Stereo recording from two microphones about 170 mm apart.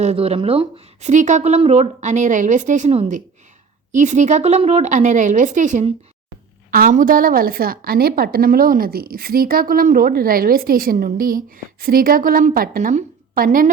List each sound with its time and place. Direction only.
0.0 s a woman's voice: 35° right (ahead or behind); by 13.7 s 55° right (ahead or behind)